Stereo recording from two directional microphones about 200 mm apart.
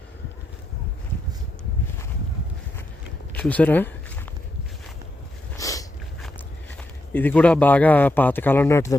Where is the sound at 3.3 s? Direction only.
5° left (ahead or behind).